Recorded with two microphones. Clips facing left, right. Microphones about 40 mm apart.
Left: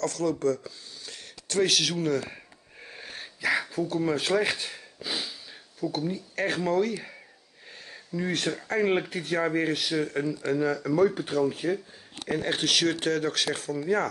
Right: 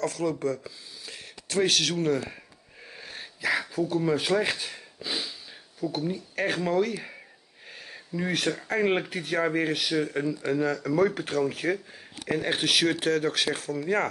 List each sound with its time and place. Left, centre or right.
0.0 s speech: centre
2.8 s wheeze: centre
3.3 s speech: centre
11.6 s speech: right
12.3 s speech: centre